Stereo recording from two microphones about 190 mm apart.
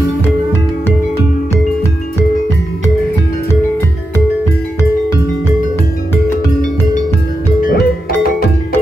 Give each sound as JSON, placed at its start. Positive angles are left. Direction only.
{"t": 7.6, "sound": "music", "side_deg": 55}